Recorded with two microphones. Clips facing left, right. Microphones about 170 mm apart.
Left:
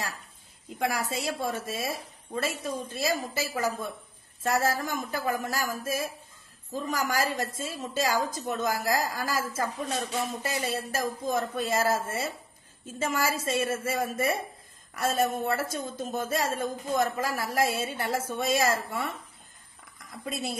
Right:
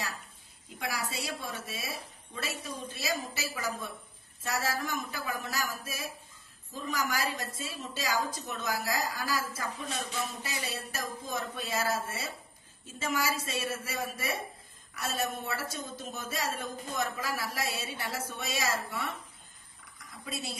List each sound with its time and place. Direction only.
0.7 s a woman's voice: 50° left (ahead or behind)
20.2 s a woman's voice: 55° left (ahead or behind)